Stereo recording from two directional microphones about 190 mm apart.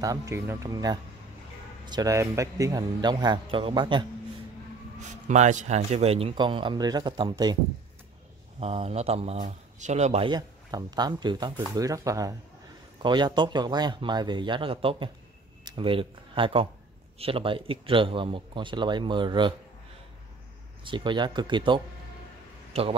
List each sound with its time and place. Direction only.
0.0 s speech: 15° right (ahead or behind)
5.3 s speech: 40° right (ahead or behind); by 7.5 s 20° right (ahead or behind)
8.5 s speech: 30° right (ahead or behind)
20.8 s a man's voice: 25° right (ahead or behind)